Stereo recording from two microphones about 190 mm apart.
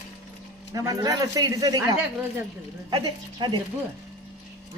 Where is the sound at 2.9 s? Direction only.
25° right (ahead or behind).